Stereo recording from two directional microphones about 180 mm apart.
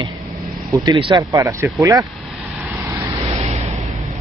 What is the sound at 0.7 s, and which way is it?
Speech, 25° right (ahead or behind).